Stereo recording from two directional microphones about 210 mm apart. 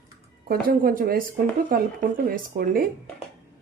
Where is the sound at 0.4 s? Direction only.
45° right (ahead or behind).